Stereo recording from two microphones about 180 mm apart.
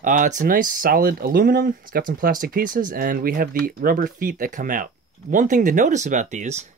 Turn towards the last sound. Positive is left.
turn(degrees=-40)  # may be behind; listen again after turning